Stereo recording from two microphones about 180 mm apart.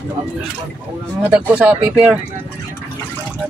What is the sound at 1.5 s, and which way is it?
Speech, 5° right (ahead or behind).